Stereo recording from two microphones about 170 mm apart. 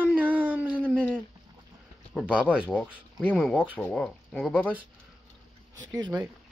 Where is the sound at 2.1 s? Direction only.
5° right (ahead or behind).